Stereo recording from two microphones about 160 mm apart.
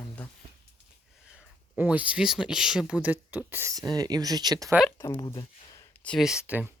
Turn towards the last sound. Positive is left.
turn(degrees=-10)  # may be behind; listen again after turning